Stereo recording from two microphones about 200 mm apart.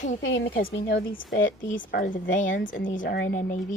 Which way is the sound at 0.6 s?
55° left (ahead or behind).